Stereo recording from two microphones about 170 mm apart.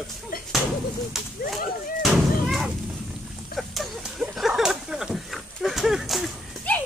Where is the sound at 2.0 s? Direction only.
Centre (ahead or behind).